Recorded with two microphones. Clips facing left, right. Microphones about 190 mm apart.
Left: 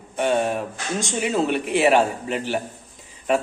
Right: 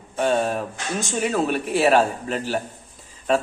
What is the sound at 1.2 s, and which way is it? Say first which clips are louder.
A man's voice: even; 20° left (ahead or behind).